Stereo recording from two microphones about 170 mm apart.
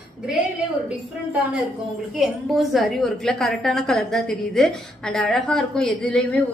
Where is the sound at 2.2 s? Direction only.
Centre (ahead or behind).